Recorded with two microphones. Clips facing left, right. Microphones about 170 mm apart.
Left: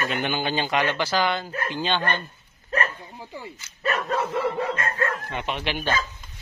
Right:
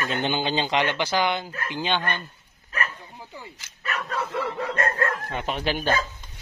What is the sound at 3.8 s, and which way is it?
Dog, 35° left (ahead or behind).